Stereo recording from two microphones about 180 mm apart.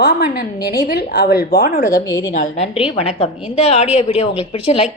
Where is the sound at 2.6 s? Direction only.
35° left (ahead or behind).